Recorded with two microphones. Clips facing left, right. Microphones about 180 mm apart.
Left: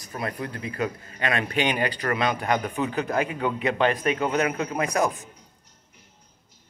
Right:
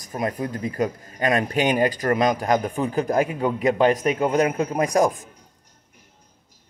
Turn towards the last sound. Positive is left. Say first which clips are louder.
# right 5 dB
turn(degrees=-35)  # may be behind; listen again after turning